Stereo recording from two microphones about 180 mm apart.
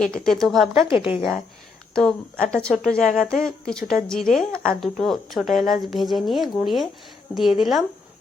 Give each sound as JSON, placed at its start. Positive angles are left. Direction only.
{"t": 0.0, "sound": "speech", "side_deg": 5}
{"t": 0.9, "sound": "a woman's voice", "side_deg": 30}
{"t": 2.0, "sound": "speech", "side_deg": 5}